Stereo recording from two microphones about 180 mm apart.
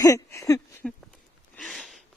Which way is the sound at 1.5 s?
Centre (ahead or behind).